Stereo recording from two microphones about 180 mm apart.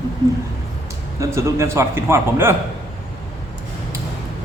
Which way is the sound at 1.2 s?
15° right (ahead or behind).